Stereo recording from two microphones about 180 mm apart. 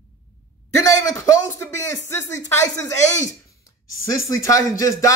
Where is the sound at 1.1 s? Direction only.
15° left (ahead or behind).